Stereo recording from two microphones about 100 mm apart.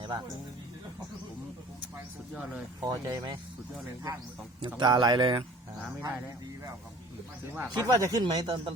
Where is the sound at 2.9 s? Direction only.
40° right (ahead or behind).